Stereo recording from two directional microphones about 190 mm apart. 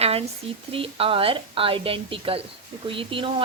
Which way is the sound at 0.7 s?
30° right (ahead or behind).